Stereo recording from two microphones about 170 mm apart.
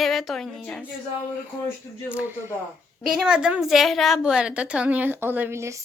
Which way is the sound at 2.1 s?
10° right (ahead or behind).